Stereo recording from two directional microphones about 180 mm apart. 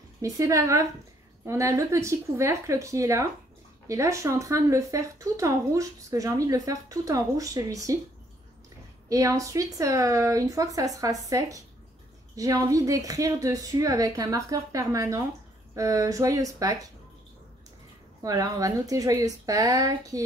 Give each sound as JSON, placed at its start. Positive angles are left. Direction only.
{"t": 0.2, "sound": "speech", "side_deg": -20}
{"t": 9.1, "sound": "speech", "side_deg": -20}
{"t": 18.2, "sound": "speech", "side_deg": -20}